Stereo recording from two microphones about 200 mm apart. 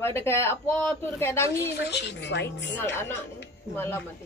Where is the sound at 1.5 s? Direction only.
55° left (ahead or behind).